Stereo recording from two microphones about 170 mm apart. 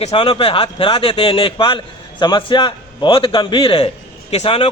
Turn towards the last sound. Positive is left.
turn(degrees=35)  # may be behind; listen again after turning